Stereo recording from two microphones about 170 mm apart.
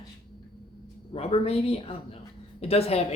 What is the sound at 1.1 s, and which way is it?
Speech, 35° left (ahead or behind).